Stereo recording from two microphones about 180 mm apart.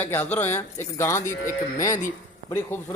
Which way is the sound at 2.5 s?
15° left (ahead or behind).